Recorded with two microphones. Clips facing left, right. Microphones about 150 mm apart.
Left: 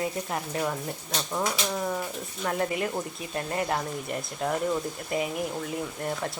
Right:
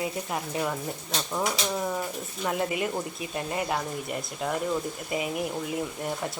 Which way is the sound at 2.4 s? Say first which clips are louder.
Even; 10° right (ahead or behind).